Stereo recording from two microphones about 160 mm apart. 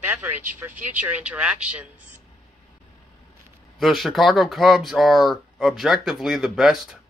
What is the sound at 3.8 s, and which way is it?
Speech, centre (ahead or behind).